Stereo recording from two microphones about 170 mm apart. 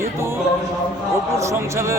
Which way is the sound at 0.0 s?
15° right (ahead or behind).